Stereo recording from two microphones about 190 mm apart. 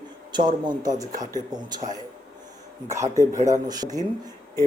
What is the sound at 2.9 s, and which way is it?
Speech, 15° right (ahead or behind).